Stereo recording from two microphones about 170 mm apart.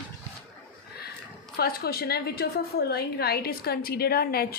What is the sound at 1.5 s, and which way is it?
A woman's voice, 65° left (ahead or behind).